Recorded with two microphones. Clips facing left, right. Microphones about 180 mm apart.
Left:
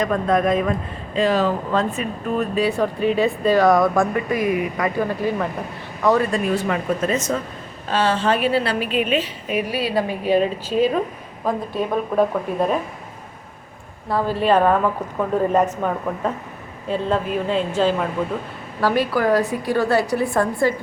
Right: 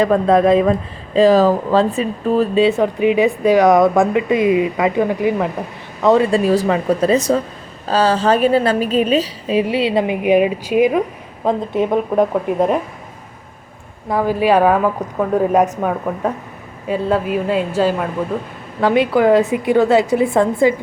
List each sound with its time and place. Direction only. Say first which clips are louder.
0.0 s a woman's voice: right 6 dB; 30° right (ahead or behind)
14.1 s speech: right 3 dB; 15° right (ahead or behind)
18.8 s speech: right 5 dB; 20° right (ahead or behind)